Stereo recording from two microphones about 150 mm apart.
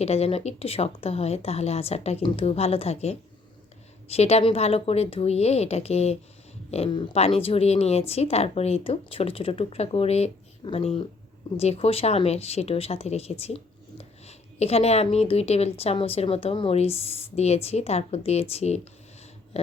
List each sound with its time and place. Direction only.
0.0 s a woman's voice: 45° left (ahead or behind)